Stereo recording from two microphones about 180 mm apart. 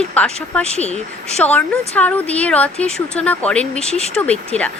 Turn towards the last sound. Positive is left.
turn(degrees=5)  # may be behind; listen again after turning